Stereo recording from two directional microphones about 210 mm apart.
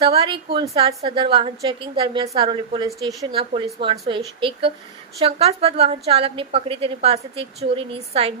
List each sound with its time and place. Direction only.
0.0 s a woman's voice: 25° right (ahead or behind)